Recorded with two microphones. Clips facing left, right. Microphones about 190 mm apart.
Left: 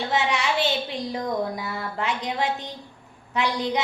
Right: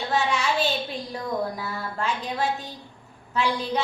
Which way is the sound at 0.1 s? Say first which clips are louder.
Right 1 dB; 15° left (ahead or behind).